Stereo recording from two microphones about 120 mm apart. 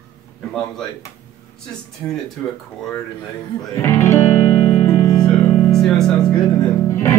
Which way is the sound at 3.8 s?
20° left (ahead or behind).